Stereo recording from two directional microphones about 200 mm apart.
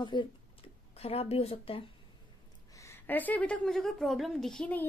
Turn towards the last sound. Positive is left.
turn(degrees=5)  # may be behind; listen again after turning